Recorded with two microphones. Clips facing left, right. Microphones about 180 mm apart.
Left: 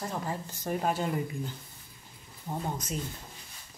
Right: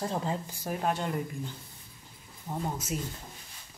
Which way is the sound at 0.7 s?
Centre (ahead or behind).